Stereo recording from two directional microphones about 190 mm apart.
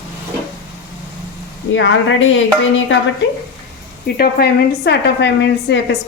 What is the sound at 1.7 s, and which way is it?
Speech, 90° left.